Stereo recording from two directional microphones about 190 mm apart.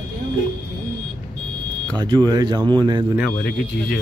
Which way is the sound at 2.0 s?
20° right (ahead or behind).